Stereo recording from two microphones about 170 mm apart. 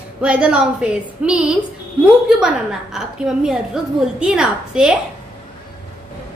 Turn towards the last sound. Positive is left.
turn(degrees=-5)  # may be behind; listen again after turning